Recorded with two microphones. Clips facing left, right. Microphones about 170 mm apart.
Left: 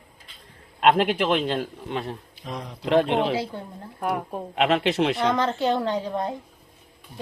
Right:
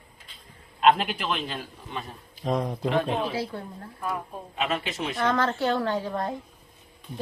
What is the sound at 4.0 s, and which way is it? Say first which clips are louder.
A woman's voice: left 6 dB; 65° left (ahead or behind).